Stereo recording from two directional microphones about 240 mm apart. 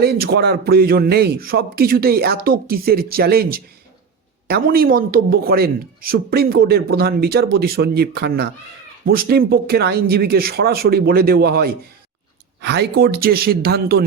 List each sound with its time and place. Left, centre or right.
0.0 s speech: right